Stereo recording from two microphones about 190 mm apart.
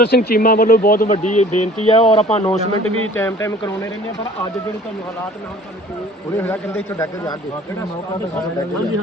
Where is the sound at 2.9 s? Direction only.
90° left.